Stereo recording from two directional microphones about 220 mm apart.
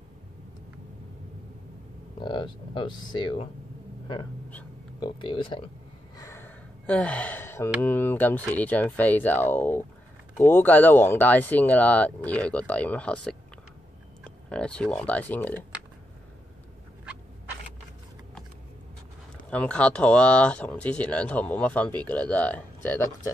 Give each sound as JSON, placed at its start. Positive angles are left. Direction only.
{"t": 2.2, "sound": "speech", "side_deg": 20}
{"t": 5.0, "sound": "speech", "side_deg": 20}
{"t": 6.1, "sound": "gasp", "side_deg": 10}
{"t": 8.5, "sound": "speech", "side_deg": 5}
{"t": 14.5, "sound": "speech", "side_deg": 5}
{"t": 19.5, "sound": "speech", "side_deg": 5}